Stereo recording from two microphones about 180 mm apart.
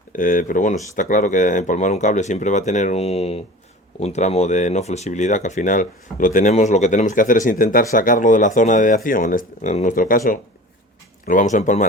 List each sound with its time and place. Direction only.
0.2 s speech: 45° left (ahead or behind)